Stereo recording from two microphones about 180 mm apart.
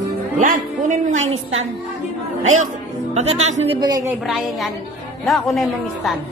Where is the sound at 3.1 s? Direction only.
35° right (ahead or behind).